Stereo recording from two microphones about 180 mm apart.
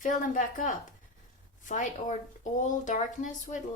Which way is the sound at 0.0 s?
45° left (ahead or behind).